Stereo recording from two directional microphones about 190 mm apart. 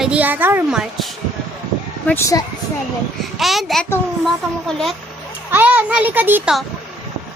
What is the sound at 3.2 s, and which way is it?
A woman's voice, centre (ahead or behind).